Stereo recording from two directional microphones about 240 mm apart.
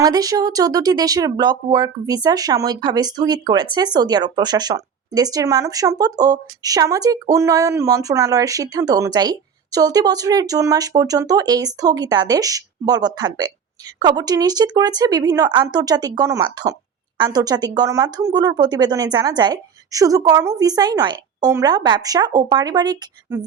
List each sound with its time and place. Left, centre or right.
0.0 s speech: centre